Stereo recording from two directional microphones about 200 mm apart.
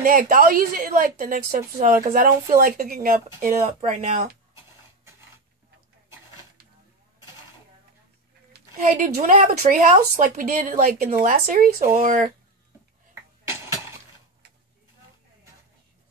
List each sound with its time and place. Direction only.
0.0 s a woman's voice: 45° right (ahead or behind)
8.7 s a woman's voice: 40° right (ahead or behind)